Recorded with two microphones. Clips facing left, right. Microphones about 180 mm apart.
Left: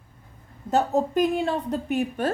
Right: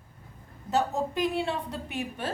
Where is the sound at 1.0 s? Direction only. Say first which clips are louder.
Left 6 dB; 45° left (ahead or behind).